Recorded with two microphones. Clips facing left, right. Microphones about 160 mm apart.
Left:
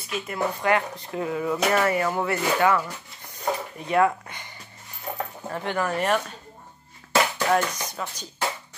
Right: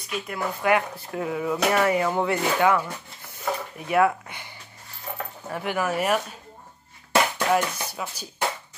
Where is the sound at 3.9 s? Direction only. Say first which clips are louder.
Even; 10° right (ahead or behind).